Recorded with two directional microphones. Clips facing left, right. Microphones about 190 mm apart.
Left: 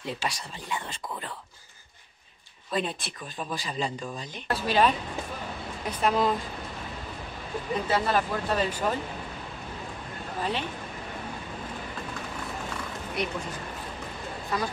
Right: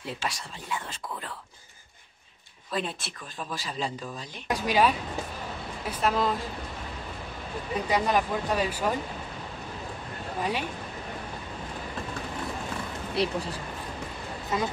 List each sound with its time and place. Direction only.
0.0 s speech: centre (ahead or behind)
2.7 s speech: centre (ahead or behind)
4.5 s speech: 15° right (ahead or behind)
5.9 s speech: centre (ahead or behind)
7.7 s speech: 15° right (ahead or behind)
10.4 s speech: 10° right (ahead or behind)
13.1 s speech: 30° right (ahead or behind)
14.5 s speech: 20° right (ahead or behind)